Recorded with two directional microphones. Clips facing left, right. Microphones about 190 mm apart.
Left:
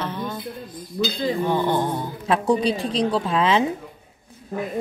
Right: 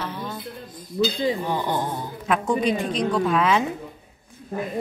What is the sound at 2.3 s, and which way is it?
A woman's voice, 35° left (ahead or behind).